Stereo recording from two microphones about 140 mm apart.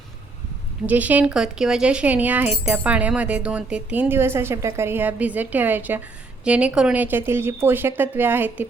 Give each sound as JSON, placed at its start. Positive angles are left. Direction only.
{"t": 0.9, "sound": "speech", "side_deg": -10}